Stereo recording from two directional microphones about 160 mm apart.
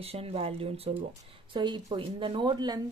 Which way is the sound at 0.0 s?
40° right (ahead or behind).